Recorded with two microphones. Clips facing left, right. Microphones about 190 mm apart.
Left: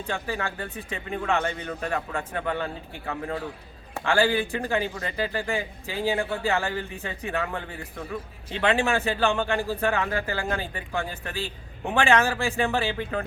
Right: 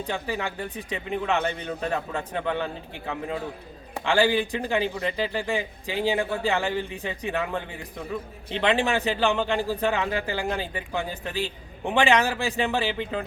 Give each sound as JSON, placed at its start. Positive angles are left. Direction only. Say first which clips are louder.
{"t": 0.1, "sound": "speech", "louder": "left 1 dB", "side_deg": -15}